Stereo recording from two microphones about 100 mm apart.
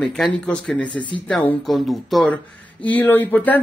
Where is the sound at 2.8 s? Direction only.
15° left (ahead or behind).